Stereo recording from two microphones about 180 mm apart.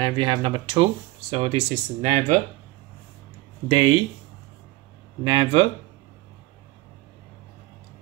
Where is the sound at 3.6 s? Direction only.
30° right (ahead or behind).